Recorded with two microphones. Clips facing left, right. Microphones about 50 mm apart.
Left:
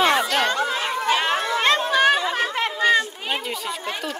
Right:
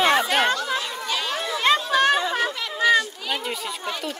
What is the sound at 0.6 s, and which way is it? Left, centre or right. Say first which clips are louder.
Chatter: left 4 dB; left.